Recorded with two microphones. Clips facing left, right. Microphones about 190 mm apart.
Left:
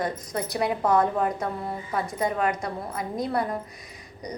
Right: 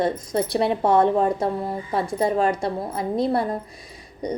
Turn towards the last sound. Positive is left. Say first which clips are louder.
# right 8 dB
turn(degrees=-30)  # may be behind; listen again after turning